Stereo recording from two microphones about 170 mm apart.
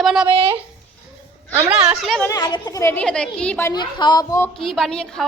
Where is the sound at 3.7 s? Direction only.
25° left (ahead or behind).